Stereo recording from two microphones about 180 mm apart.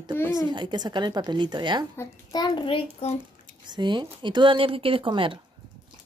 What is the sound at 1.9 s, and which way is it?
A child's voice, 20° left (ahead or behind).